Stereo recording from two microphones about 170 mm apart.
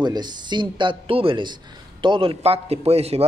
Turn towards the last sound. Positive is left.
turn(degrees=-35)  # may be behind; listen again after turning